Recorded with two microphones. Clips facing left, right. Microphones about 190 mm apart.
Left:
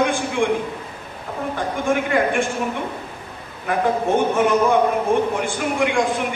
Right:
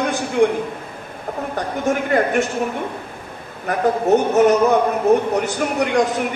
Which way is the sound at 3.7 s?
40° right (ahead or behind).